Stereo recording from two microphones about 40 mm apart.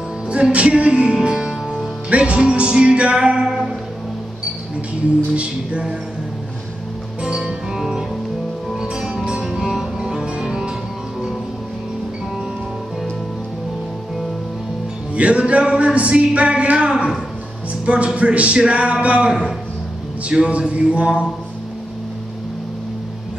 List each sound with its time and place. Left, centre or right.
0.3 s music: right
2.0 s music: right
5.3 s music: right
7.2 s music: right
15.1 s music: right
20.4 s music: right